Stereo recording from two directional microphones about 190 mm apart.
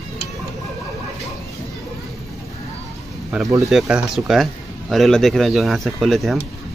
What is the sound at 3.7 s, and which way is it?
Speech, 5° right (ahead or behind).